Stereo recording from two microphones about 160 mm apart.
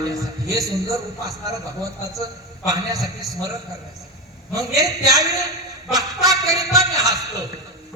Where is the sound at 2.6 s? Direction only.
25° right (ahead or behind).